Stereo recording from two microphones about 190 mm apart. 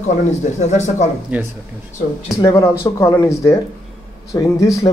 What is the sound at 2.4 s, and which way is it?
A man's voice, 15° left (ahead or behind).